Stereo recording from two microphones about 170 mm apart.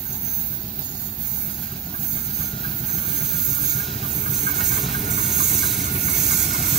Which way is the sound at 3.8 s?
Centre (ahead or behind).